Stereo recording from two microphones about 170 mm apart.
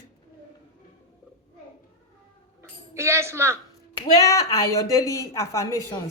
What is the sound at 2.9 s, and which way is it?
Speech, 15° right (ahead or behind).